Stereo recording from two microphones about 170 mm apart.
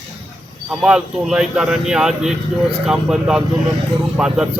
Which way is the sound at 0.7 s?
5° right (ahead or behind).